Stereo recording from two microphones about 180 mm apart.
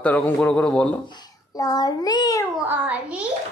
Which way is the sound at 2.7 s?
5° right (ahead or behind).